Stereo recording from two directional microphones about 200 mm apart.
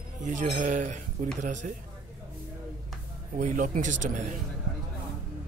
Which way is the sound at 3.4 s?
40° right (ahead or behind).